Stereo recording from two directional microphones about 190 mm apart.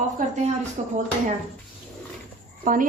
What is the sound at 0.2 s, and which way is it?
Speech, 45° right (ahead or behind).